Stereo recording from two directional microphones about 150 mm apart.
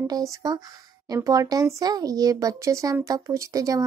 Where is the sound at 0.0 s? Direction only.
25° right (ahead or behind).